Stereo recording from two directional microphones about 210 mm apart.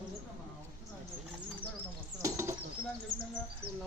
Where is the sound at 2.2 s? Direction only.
10° right (ahead or behind).